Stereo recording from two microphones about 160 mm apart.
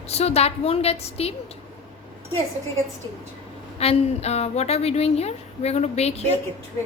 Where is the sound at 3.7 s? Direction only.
40° left (ahead or behind).